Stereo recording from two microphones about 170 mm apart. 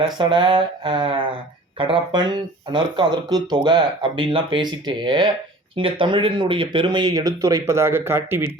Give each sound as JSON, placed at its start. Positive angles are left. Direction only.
{"t": 0.2, "sound": "speech", "side_deg": -30}